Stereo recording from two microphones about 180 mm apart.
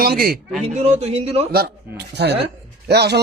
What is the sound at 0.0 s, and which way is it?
Speech, 55° right (ahead or behind).